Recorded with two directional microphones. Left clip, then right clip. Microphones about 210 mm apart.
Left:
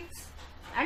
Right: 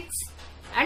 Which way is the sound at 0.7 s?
30° right (ahead or behind).